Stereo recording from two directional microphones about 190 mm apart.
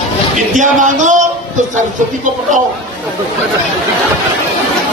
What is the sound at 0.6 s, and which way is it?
Speech, 40° right (ahead or behind).